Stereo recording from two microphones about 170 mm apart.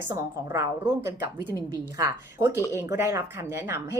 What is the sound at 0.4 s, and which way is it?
A woman's voice, 15° right (ahead or behind).